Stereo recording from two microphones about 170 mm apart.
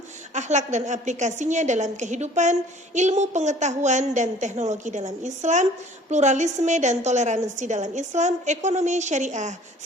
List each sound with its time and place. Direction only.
0.3 s a woman's voice: 45° right (ahead or behind)